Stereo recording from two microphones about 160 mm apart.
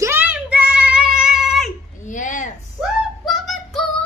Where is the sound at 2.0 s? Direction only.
50° left (ahead or behind).